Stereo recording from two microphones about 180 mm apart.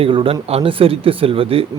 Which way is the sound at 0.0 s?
30° right (ahead or behind).